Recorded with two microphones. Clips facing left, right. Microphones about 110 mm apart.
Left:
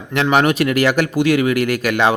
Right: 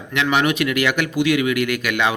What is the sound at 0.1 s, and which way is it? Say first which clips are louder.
Speech: left 4 dB; 40° left (ahead or behind).